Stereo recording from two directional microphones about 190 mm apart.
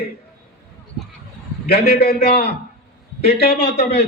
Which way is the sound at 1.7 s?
55° left (ahead or behind).